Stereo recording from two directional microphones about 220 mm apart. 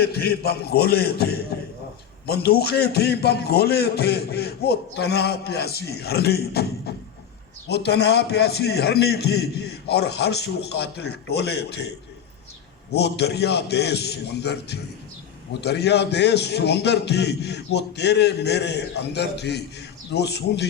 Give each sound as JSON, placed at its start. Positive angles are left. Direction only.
{"t": 0.0, "sound": "a man's voice", "side_deg": 45}
{"t": 12.9, "sound": "a man's voice", "side_deg": 50}